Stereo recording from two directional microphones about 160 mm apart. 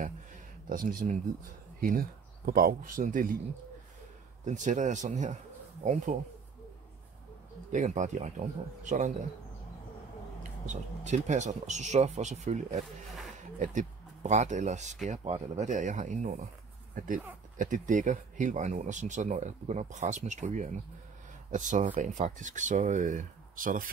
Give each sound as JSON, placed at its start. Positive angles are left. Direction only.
{"t": 0.7, "sound": "speech", "side_deg": -60}
{"t": 4.5, "sound": "speech", "side_deg": -50}
{"t": 7.7, "sound": "speech", "side_deg": -50}
{"t": 10.7, "sound": "speech", "side_deg": -50}